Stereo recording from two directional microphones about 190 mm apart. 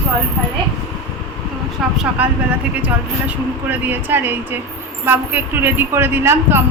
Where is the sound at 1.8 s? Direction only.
5° right (ahead or behind).